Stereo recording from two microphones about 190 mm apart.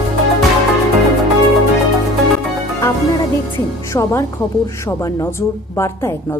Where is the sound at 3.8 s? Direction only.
15° left (ahead or behind).